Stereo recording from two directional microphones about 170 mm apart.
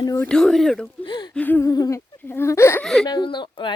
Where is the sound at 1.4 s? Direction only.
10° left (ahead or behind).